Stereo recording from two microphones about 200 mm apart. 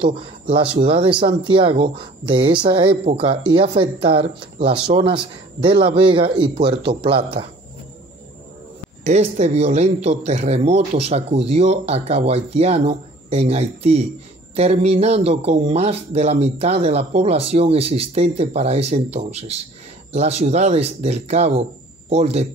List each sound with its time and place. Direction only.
0.0 s speech: 25° right (ahead or behind)
9.0 s speech: 35° right (ahead or behind)